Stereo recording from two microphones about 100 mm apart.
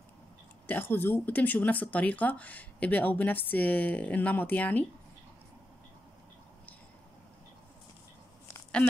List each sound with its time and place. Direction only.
0.7 s speech: 20° left (ahead or behind)